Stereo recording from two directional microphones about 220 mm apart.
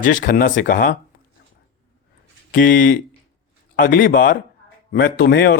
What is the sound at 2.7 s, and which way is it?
Speech, 40° left (ahead or behind).